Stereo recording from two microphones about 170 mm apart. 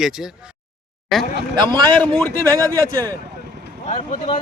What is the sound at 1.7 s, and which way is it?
Speech, 25° right (ahead or behind).